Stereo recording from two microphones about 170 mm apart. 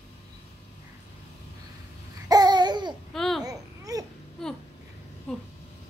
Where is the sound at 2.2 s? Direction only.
25° right (ahead or behind).